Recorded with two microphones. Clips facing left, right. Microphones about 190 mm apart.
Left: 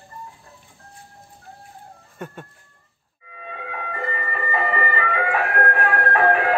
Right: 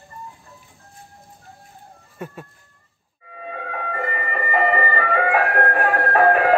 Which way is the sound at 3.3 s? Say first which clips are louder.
Right 3 dB; 45° right (ahead or behind).